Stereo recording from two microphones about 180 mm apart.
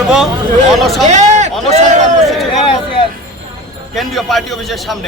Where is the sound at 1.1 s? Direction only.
40° right (ahead or behind).